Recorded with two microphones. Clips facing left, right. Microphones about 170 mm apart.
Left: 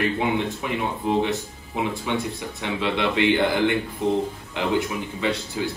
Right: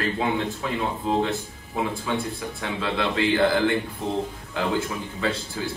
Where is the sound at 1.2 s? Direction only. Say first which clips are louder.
Left 2 dB; 20° left (ahead or behind).